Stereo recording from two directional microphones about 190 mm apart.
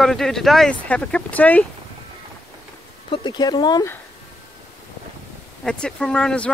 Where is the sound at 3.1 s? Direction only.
25° left (ahead or behind).